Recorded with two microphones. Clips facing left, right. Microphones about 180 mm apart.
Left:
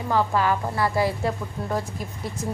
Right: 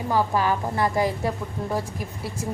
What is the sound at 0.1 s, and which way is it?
A woman's voice, 15° right (ahead or behind).